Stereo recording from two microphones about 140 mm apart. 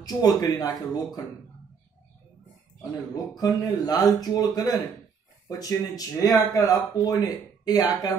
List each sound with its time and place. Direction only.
0.0 s speech: 30° left (ahead or behind)
3.3 s speech: 25° left (ahead or behind)